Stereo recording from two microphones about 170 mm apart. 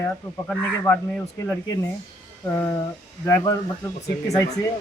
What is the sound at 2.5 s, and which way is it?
A man's voice, 10° left (ahead or behind).